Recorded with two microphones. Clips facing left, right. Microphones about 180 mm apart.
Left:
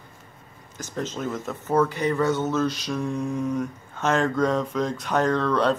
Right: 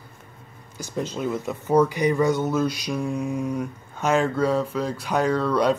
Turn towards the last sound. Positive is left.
turn(degrees=-10)  # may be behind; listen again after turning